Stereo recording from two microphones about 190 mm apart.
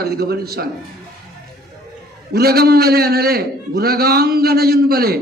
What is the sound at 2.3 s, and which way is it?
Speech, 55° right (ahead or behind).